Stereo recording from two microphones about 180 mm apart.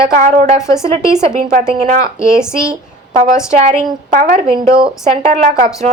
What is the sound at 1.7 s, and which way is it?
Speech, 35° right (ahead or behind).